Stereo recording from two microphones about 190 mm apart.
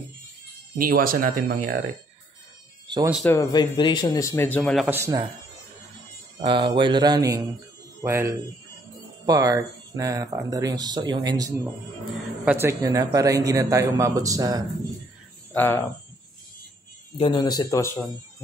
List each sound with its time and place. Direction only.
0.7 s speech: 50° right (ahead or behind)
3.3 s speech: 20° left (ahead or behind)
4.8 s a man's voice: 15° right (ahead or behind)
6.4 s a man's voice: 25° right (ahead or behind)
12.1 s a man's voice: 10° right (ahead or behind)
15.5 s speech: 10° left (ahead or behind)
17.2 s speech: 20° left (ahead or behind)